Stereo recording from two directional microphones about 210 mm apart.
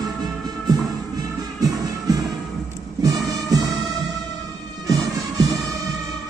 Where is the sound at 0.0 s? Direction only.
20° right (ahead or behind).